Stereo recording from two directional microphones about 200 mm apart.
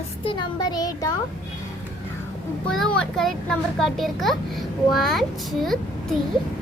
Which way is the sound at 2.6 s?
5° left (ahead or behind).